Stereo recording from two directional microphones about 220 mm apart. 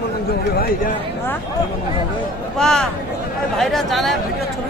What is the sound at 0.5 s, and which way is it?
Speech, 40° left (ahead or behind).